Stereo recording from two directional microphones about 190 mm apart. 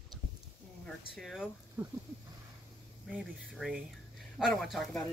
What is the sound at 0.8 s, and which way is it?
Speech, centre (ahead or behind).